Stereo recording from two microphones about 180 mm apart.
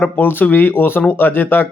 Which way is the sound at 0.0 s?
10° left (ahead or behind).